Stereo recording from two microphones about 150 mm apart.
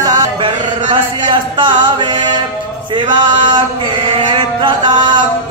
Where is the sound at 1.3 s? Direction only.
30° right (ahead or behind).